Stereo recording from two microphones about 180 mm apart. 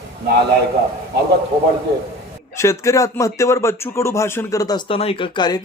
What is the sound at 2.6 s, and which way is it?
Speech, 15° left (ahead or behind).